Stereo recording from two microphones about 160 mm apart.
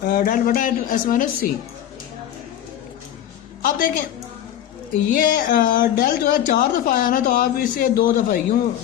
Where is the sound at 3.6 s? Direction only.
60° left (ahead or behind).